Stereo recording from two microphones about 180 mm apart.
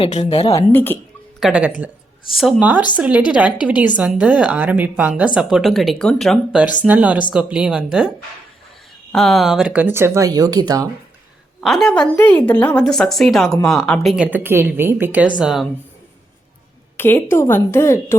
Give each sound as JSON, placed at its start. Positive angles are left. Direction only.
{"t": 0.0, "sound": "a woman's voice", "side_deg": 35}
{"t": 0.5, "sound": "a woman's voice", "side_deg": 10}
{"t": 1.4, "sound": "speech", "side_deg": -5}
{"t": 9.1, "sound": "speech", "side_deg": 0}
{"t": 11.6, "sound": "speech", "side_deg": 0}
{"t": 17.0, "sound": "a woman's voice", "side_deg": 10}